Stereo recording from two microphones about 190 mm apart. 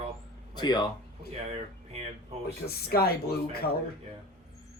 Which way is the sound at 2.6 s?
55° left (ahead or behind).